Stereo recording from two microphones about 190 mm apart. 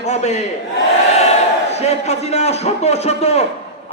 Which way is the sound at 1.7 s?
35° left (ahead or behind).